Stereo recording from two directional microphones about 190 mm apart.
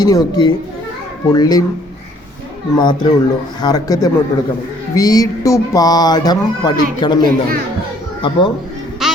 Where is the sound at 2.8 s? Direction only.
25° left (ahead or behind).